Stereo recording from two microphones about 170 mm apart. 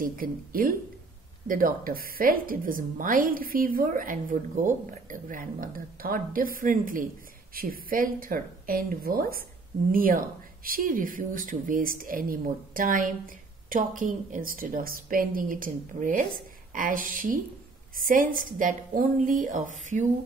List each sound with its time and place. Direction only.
0.0 s a woman's voice: 55° right (ahead or behind)